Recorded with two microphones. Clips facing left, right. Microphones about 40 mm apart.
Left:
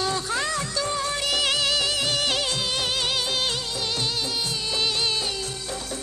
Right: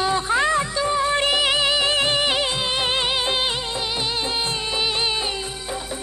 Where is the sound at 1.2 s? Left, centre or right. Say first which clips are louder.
Right 5 dB; right.